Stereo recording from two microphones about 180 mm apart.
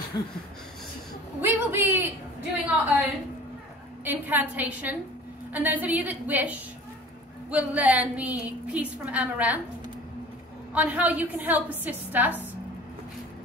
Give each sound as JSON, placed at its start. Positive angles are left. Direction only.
{"t": 0.1, "sound": "a sound", "side_deg": 20}
{"t": 1.4, "sound": "a woman's voice", "side_deg": -10}
{"t": 10.7, "sound": "a woman's voice", "side_deg": -10}